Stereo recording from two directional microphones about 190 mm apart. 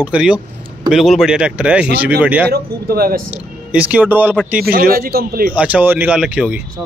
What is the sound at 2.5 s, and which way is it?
Speech, 55° right (ahead or behind).